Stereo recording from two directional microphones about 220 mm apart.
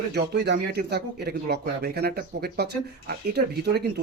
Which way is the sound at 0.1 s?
50° right (ahead or behind).